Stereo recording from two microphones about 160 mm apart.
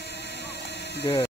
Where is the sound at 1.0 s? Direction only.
25° left (ahead or behind).